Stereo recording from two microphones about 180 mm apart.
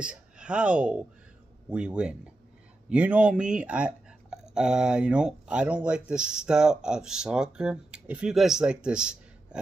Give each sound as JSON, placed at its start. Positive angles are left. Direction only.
{"t": 0.0, "sound": "speech", "side_deg": -5}